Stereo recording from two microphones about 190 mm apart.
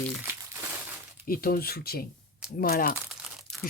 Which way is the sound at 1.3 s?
50° left (ahead or behind).